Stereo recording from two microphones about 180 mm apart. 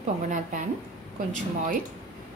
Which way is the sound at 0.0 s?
45° right (ahead or behind).